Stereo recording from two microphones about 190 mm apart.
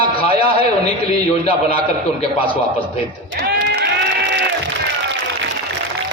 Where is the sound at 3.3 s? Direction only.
55° right (ahead or behind).